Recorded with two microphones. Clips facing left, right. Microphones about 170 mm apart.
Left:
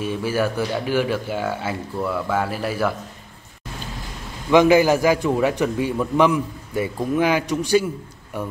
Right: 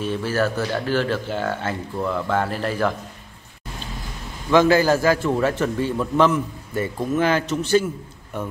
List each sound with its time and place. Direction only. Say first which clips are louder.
0.0 s a man's voice: even; 10° left (ahead or behind)
4.5 s a man's voice: left 2 dB; 15° left (ahead or behind)